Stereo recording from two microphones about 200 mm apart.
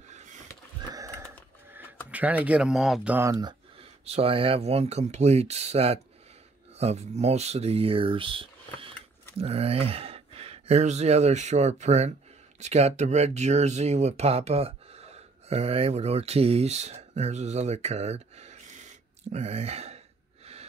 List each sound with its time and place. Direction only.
2.0 s speech: 5° right (ahead or behind)
4.0 s speech: 30° right (ahead or behind)